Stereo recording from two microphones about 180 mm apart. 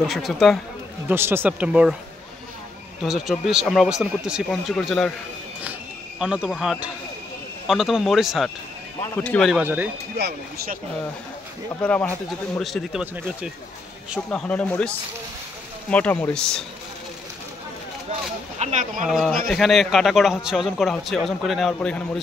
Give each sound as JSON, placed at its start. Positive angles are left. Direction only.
{"t": 0.1, "sound": "a man's voice", "side_deg": 0}
{"t": 1.0, "sound": "speech", "side_deg": -10}
{"t": 3.0, "sound": "a man's voice", "side_deg": 0}
{"t": 5.6, "sound": "cricket", "side_deg": -5}
{"t": 7.6, "sound": "a man's voice", "side_deg": 0}
{"t": 9.1, "sound": "speech", "side_deg": 10}
{"t": 9.6, "sound": "speech", "side_deg": -10}
{"t": 10.1, "sound": "speech", "side_deg": -65}
{"t": 11.8, "sound": "a man's voice", "side_deg": 5}
{"t": 14.3, "sound": "speech", "side_deg": 5}
{"t": 18.6, "sound": "speech", "side_deg": -40}
{"t": 19.0, "sound": "a man's voice", "side_deg": 0}